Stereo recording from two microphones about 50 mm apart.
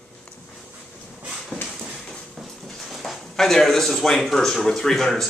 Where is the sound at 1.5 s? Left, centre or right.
Left.